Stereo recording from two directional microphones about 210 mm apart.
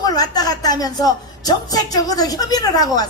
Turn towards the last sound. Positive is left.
turn(degrees=20)  # may be behind; listen again after turning